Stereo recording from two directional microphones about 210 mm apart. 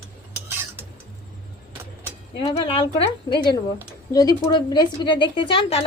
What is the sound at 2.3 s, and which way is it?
Speech, 25° left (ahead or behind).